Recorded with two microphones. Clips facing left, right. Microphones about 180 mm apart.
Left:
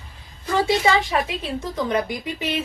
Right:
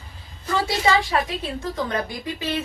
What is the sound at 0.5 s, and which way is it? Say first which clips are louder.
A woman's voice: left 2 dB; 20° left (ahead or behind).